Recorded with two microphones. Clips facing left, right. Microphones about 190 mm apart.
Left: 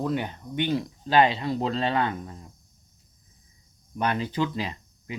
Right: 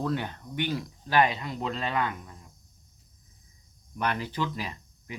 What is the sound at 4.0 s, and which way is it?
Speech, 25° left (ahead or behind).